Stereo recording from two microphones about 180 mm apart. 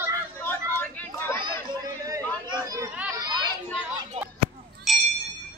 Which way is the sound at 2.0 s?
20° right (ahead or behind).